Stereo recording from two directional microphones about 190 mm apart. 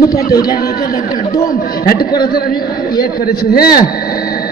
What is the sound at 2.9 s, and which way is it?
Speech, 55° left (ahead or behind).